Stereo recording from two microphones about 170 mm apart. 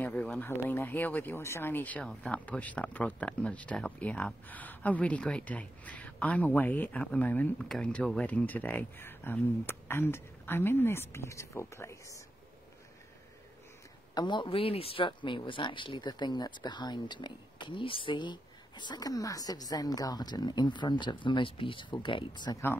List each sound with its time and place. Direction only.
0.0 s speech: 5° left (ahead or behind)
14.1 s speech: 25° left (ahead or behind)